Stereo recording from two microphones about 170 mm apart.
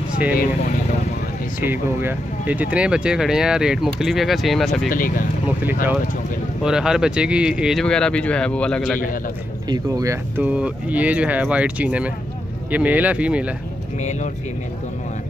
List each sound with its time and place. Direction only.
1.6 s speech: 10° right (ahead or behind)
4.8 s speech: 55° left (ahead or behind)
6.6 s speech: 5° right (ahead or behind)
9.7 s speech: 20° right (ahead or behind)